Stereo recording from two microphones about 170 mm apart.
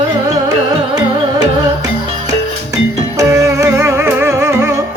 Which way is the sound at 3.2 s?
20° right (ahead or behind).